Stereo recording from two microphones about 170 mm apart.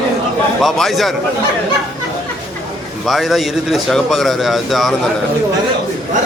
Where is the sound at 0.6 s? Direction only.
Centre (ahead or behind).